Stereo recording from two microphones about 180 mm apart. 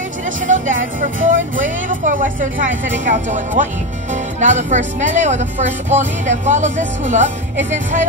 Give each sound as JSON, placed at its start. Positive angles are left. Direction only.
{"t": 0.5, "sound": "speech", "side_deg": -45}